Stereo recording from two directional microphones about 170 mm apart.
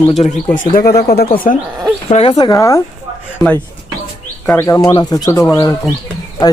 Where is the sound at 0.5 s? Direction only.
55° left (ahead or behind).